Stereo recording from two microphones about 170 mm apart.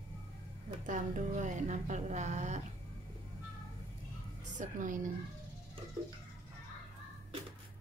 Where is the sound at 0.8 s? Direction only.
50° right (ahead or behind).